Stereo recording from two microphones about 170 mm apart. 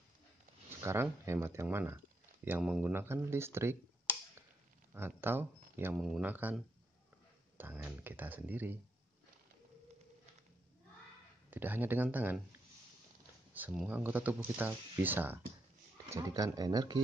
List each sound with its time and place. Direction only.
0.7 s speech: 15° right (ahead or behind)
4.9 s speech: 15° right (ahead or behind)
5.9 s speech: centre (ahead or behind)
11.5 s speech: 10° right (ahead or behind)
13.5 s speech: 5° right (ahead or behind); by 17.0 s 20° right (ahead or behind)